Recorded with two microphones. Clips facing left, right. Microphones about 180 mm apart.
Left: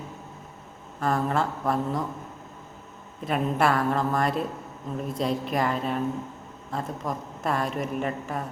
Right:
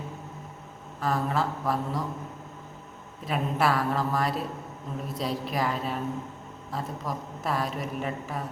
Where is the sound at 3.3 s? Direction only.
Centre (ahead or behind).